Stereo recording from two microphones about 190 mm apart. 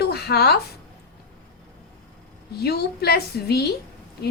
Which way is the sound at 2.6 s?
55° left (ahead or behind).